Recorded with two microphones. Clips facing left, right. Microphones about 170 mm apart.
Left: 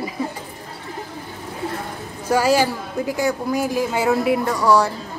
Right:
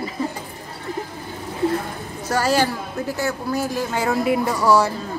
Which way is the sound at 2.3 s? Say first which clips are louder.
Left 2 dB; 10° left (ahead or behind).